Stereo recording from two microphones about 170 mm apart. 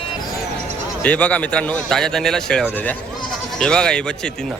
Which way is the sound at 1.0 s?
10° left (ahead or behind).